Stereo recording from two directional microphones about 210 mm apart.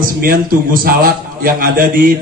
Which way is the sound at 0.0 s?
40° right (ahead or behind).